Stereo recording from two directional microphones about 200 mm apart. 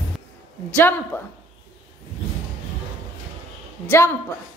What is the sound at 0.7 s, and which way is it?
Speech, 10° left (ahead or behind).